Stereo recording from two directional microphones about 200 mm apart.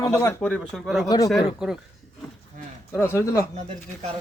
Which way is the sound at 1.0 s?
20° left (ahead or behind).